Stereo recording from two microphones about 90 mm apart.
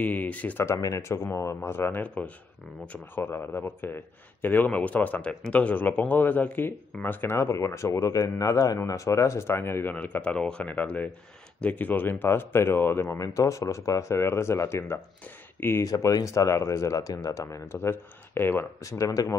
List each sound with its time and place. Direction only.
0.0 s speech: 15° left (ahead or behind)
0.7 s speech: 40° left (ahead or behind)
9.9 s speech: 15° left (ahead or behind)
13.1 s speech: 35° left (ahead or behind)
18.8 s speech: 35° left (ahead or behind)